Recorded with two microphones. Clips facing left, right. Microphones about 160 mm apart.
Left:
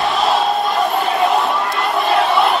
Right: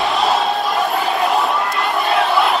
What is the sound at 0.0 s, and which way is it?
Crowd, centre (ahead or behind).